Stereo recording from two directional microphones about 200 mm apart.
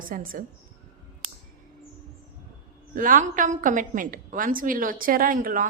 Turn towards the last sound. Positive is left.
turn(degrees=-40)  # may be behind; listen again after turning